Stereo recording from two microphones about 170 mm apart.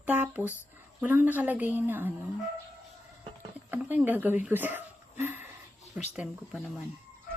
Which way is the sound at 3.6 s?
10° right (ahead or behind).